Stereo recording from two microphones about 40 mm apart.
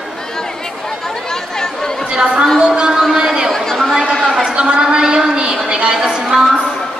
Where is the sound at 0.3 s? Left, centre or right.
Centre.